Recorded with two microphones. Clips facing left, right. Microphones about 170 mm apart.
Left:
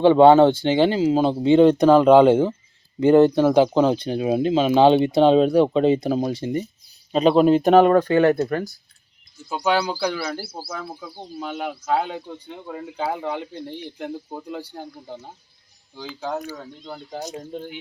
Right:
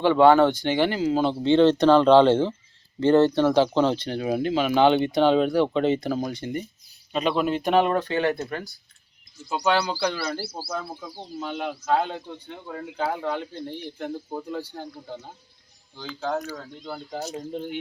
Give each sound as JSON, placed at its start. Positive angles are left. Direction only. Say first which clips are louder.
{"t": 0.0, "sound": "speech", "louder": "left 4 dB", "side_deg": 20}
{"t": 7.1, "sound": "speech", "louder": "left 8 dB", "side_deg": 35}
{"t": 9.9, "sound": "speech", "louder": "left 2 dB", "side_deg": 5}
{"t": 16.0, "sound": "speech", "louder": "even", "side_deg": 10}
{"t": 17.2, "sound": "speech", "louder": "left 1 dB", "side_deg": 15}